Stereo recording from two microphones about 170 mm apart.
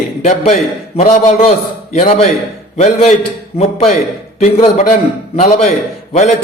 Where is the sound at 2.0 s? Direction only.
35° left (ahead or behind).